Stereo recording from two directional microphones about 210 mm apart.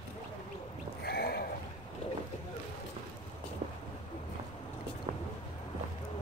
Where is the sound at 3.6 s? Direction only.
35° right (ahead or behind).